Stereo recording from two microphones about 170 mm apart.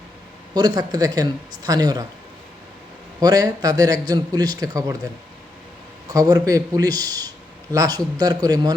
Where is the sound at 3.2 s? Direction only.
20° right (ahead or behind).